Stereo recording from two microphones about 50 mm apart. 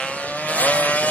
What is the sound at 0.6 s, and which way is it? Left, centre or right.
Vehicle, left.